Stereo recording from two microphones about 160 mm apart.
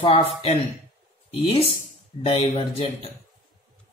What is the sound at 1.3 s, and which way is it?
Speech, 40° left (ahead or behind).